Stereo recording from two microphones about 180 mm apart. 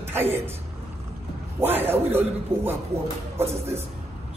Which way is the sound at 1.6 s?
10° right (ahead or behind).